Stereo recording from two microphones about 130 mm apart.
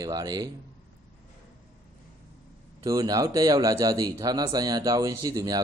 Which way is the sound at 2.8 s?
30° right (ahead or behind).